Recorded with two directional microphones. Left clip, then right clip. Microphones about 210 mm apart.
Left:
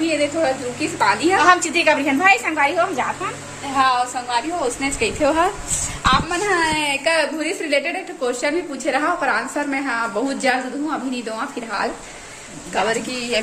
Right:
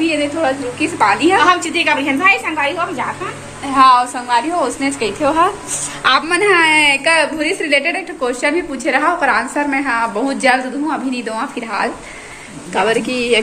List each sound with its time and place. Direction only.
0.0 s a woman's voice: 5° left (ahead or behind)
1.4 s a woman's voice: 40° left (ahead or behind)
3.7 s a woman's voice: 5° right (ahead or behind)
4.7 s a woman's voice: centre (ahead or behind)
5.2 s a woman's voice: 15° left (ahead or behind)
6.0 s a woman's voice: 15° right (ahead or behind)
6.5 s a woman's voice: 5° left (ahead or behind)